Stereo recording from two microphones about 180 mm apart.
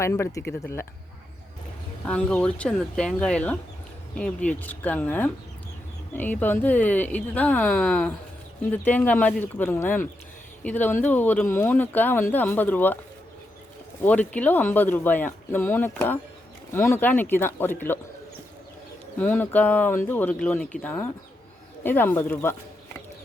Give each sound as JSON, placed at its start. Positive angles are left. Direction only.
{"t": 0.0, "sound": "speech", "side_deg": 15}
{"t": 2.0, "sound": "speech", "side_deg": 5}
{"t": 14.0, "sound": "speech", "side_deg": 10}
{"t": 19.2, "sound": "speech", "side_deg": 10}